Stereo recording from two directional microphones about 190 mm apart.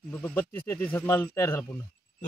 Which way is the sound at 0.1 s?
10° left (ahead or behind).